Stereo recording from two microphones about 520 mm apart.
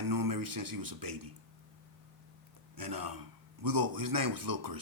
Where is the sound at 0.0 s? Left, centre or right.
Right.